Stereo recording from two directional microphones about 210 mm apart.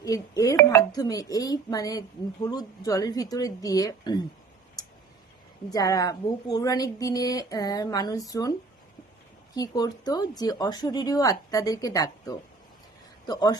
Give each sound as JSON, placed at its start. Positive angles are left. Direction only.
{"t": 0.0, "sound": "speech", "side_deg": 15}
{"t": 5.7, "sound": "speech", "side_deg": 15}
{"t": 9.6, "sound": "speech", "side_deg": 20}